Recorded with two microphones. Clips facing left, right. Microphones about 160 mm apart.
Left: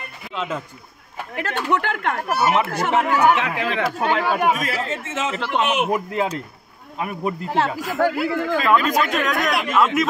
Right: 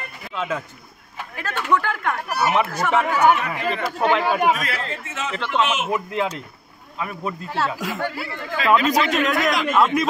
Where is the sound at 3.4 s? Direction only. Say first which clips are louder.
Left 2 dB; 90° left.